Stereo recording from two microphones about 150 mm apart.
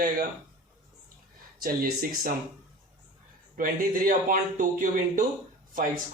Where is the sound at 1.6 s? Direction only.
75° right (ahead or behind).